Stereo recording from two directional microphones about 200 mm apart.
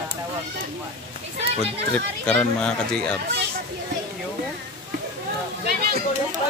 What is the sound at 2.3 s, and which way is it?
Speech, 5° left (ahead or behind).